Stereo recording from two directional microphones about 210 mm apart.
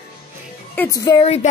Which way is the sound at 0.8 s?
15° left (ahead or behind).